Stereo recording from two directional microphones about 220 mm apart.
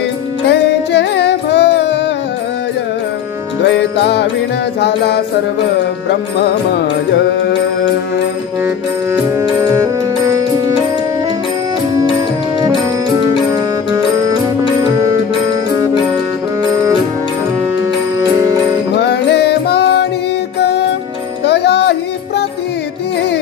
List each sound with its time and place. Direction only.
0.5 s music: 50° left (ahead or behind)
4.0 s music: 50° left (ahead or behind)
18.9 s music: 50° left (ahead or behind)
21.5 s music: 50° left (ahead or behind)